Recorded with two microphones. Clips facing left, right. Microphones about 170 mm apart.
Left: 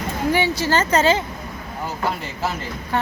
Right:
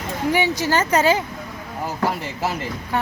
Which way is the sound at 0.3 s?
15° right (ahead or behind).